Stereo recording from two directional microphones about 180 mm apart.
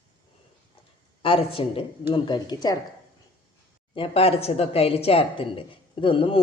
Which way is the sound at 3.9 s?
30° left (ahead or behind).